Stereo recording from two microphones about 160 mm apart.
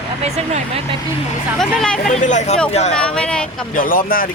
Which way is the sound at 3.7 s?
60° left (ahead or behind).